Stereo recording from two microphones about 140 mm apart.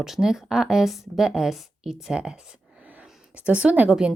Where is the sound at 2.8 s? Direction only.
10° right (ahead or behind).